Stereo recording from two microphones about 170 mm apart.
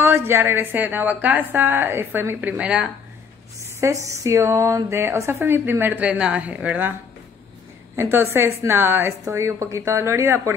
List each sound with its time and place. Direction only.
0.0 s a woman's voice: 15° right (ahead or behind)
3.8 s a woman's voice: 20° right (ahead or behind)
7.9 s a woman's voice: 15° right (ahead or behind)